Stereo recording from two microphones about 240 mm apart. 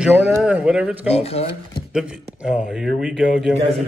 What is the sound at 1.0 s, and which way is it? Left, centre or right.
Speech, left.